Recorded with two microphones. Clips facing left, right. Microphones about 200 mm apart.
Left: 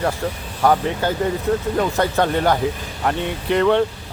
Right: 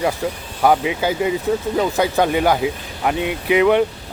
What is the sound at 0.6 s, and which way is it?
Speech, 10° right (ahead or behind).